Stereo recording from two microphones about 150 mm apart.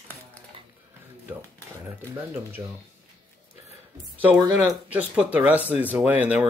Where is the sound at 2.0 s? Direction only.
15° right (ahead or behind).